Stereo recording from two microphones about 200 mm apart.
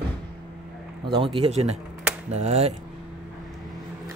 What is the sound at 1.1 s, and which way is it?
Speech, 25° right (ahead or behind).